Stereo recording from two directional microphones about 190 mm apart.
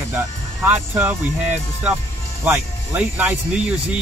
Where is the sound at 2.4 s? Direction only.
10° right (ahead or behind).